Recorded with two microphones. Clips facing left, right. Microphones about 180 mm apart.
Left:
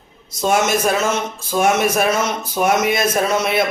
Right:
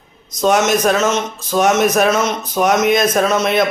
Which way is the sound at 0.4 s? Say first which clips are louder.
Right 3 dB; 10° left (ahead or behind).